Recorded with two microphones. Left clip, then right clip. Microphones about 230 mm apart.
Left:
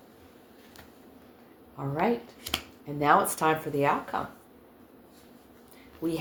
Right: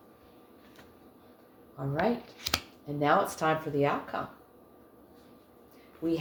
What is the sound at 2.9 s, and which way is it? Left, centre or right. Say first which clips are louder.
Speech: left 3 dB; left.